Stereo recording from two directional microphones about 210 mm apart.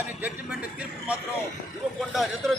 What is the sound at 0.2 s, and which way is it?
Speech, 5° right (ahead or behind).